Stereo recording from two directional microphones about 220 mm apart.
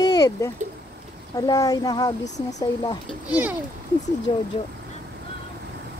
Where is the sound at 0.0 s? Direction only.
15° left (ahead or behind).